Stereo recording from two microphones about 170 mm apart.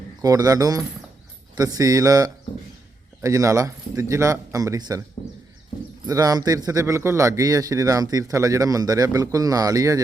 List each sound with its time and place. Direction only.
0.2 s a man's voice: 20° right (ahead or behind)
6.1 s a man's voice: 20° right (ahead or behind)